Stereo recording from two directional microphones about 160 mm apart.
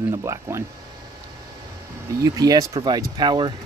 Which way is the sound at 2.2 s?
20° right (ahead or behind).